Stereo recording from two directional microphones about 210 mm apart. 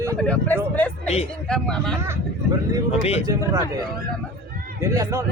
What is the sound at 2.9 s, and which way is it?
Speech, 30° left (ahead or behind).